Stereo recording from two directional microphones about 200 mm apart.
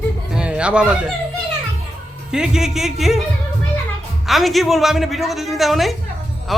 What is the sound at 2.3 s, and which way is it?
Speech, 5° right (ahead or behind).